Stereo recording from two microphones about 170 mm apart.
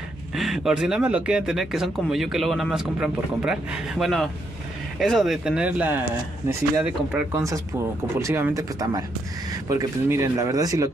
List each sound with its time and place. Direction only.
0.3 s speech: centre (ahead or behind); by 10.9 s 20° right (ahead or behind)